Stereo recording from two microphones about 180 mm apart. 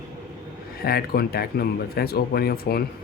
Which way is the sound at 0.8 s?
60° left (ahead or behind).